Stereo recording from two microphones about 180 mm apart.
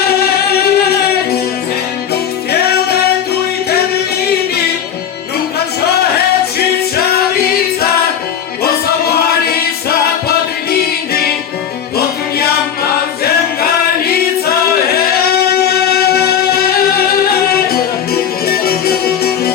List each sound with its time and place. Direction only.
0.6 s music: 60° left (ahead or behind)
6.9 s music: 60° left (ahead or behind)
10.2 s music: 60° left (ahead or behind)